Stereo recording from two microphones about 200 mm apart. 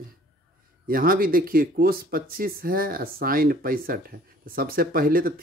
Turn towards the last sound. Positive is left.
turn(degrees=-45)  # may be behind; listen again after turning